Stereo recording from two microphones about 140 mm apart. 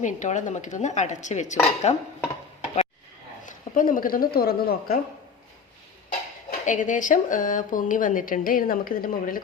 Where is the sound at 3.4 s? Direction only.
75° left (ahead or behind).